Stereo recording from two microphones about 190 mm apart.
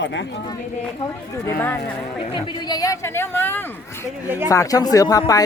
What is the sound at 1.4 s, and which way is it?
Speech, 10° left (ahead or behind).